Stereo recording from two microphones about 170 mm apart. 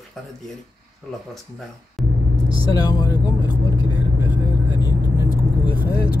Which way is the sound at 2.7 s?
20° left (ahead or behind).